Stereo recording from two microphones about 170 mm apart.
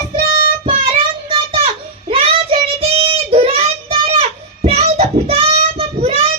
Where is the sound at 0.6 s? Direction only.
35° right (ahead or behind).